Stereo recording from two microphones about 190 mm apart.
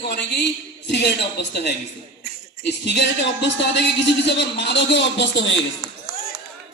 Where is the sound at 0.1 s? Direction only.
65° left (ahead or behind).